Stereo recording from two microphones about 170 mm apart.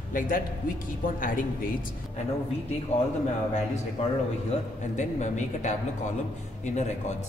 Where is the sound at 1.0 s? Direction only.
55° left (ahead or behind).